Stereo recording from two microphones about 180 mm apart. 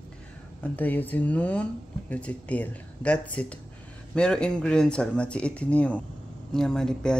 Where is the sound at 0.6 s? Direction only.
10° left (ahead or behind).